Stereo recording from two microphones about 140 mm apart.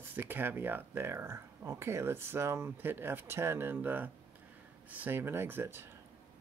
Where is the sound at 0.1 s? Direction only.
15° right (ahead or behind).